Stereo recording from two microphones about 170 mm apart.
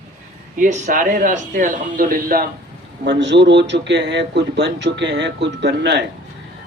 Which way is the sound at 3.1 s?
90° right.